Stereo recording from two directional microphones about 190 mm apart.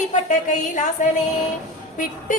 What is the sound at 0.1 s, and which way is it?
Music, 40° left (ahead or behind).